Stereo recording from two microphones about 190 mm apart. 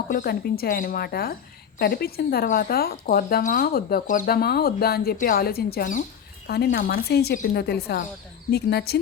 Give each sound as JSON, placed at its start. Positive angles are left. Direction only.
{"t": 0.1, "sound": "speech", "side_deg": 50}
{"t": 6.5, "sound": "speech", "side_deg": 55}